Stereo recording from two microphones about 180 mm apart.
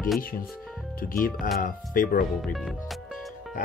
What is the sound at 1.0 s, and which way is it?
Speech, 50° left (ahead or behind).